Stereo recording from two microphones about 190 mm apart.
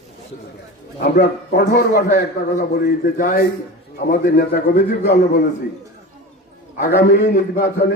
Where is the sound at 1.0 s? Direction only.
55° left (ahead or behind).